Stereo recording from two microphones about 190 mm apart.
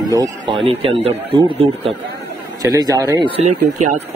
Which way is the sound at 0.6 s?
30° right (ahead or behind).